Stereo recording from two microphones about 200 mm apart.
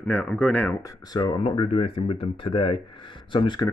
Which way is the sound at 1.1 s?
20° left (ahead or behind).